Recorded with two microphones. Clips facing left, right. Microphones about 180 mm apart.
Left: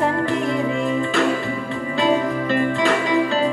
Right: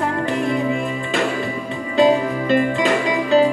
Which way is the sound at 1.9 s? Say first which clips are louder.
Right 4 dB; 20° right (ahead or behind).